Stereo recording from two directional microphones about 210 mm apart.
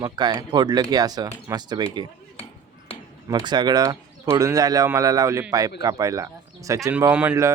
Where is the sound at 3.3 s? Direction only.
20° right (ahead or behind).